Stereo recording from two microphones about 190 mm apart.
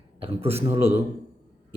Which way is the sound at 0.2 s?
30° right (ahead or behind).